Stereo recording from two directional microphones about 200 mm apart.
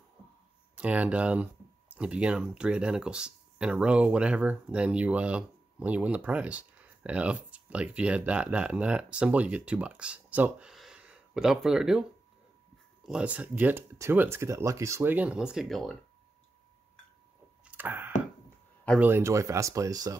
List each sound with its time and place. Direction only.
0.7 s speech: 5° right (ahead or behind)
17.6 s a sound: 10° right (ahead or behind)
18.9 s speech: 10° right (ahead or behind)